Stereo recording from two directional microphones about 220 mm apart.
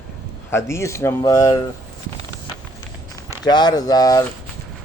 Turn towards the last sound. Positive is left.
turn(degrees=15)  # may be behind; listen again after turning